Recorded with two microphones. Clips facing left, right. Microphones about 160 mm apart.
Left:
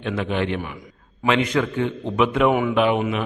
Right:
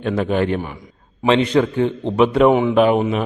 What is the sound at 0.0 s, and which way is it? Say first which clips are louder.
A man's voice: right 5 dB; 40° right (ahead or behind).